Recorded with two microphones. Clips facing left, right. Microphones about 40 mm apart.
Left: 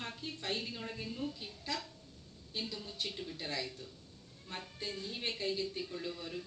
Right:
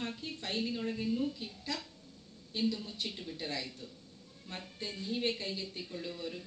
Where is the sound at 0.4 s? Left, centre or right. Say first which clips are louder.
Right 4 dB; centre.